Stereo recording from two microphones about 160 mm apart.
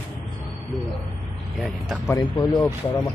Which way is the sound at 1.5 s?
Centre (ahead or behind).